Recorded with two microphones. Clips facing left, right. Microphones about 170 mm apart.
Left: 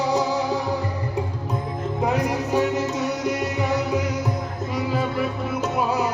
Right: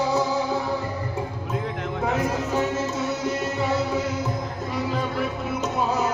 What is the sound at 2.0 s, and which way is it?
Music, 15° left (ahead or behind).